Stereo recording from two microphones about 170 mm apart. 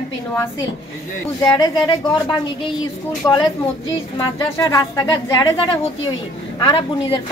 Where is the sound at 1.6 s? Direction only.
25° left (ahead or behind).